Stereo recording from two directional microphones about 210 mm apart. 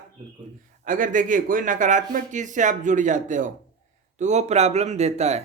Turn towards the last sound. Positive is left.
turn(degrees=-30)  # may be behind; listen again after turning